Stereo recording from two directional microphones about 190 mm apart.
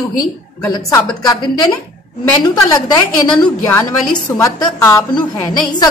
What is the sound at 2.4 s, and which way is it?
A woman's voice, 20° left (ahead or behind).